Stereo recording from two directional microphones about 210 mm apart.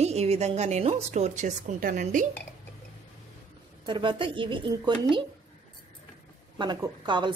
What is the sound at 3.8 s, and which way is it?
Speech, 25° right (ahead or behind).